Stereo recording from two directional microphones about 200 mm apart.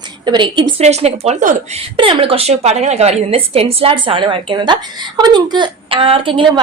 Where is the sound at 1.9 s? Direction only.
25° right (ahead or behind).